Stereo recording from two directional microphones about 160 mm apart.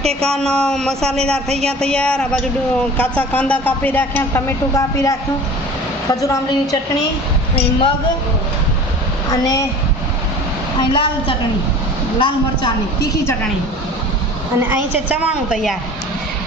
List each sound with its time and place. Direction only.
0.0 s a woman's voice: 5° left (ahead or behind); by 6.8 s 25° left (ahead or behind)
9.3 s a woman's voice: 20° left (ahead or behind)
10.8 s a woman's voice: 30° left (ahead or behind)
14.7 s a woman's voice: 10° right (ahead or behind)